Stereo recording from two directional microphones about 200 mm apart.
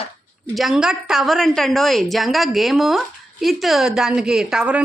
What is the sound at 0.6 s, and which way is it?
A woman's voice, centre (ahead or behind).